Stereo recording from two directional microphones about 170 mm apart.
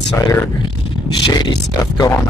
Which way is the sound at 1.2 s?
25° left (ahead or behind).